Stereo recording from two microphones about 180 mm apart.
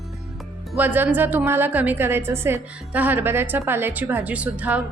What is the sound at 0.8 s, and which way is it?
A woman's voice, 10° right (ahead or behind).